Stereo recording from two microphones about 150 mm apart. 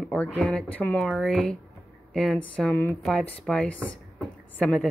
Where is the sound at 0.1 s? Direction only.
10° left (ahead or behind).